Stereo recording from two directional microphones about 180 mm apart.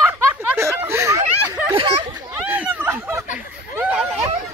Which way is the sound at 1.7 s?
30° right (ahead or behind).